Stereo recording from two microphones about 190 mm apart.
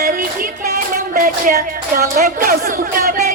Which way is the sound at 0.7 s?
50° right (ahead or behind).